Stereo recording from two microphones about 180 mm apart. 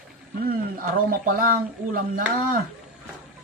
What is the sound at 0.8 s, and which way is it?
Speech, 50° right (ahead or behind).